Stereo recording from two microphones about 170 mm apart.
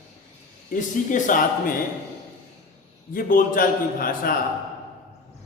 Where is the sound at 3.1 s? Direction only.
55° left (ahead or behind).